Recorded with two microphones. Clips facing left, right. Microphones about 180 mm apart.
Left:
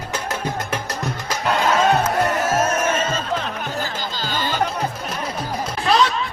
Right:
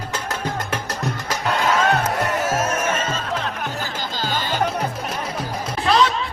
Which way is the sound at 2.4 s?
40° left (ahead or behind).